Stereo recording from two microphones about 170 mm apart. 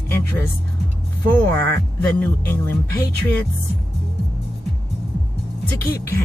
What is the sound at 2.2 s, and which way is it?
Speech, 15° left (ahead or behind).